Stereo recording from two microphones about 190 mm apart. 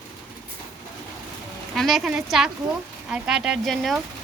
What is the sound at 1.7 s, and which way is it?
Speech, centre (ahead or behind).